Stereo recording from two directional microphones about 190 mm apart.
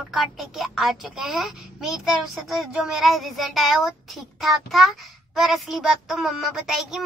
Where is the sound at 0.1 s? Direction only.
Centre (ahead or behind).